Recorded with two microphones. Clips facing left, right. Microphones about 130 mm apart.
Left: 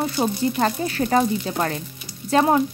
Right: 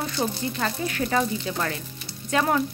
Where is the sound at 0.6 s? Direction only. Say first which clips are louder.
Left 5 dB; 35° left (ahead or behind).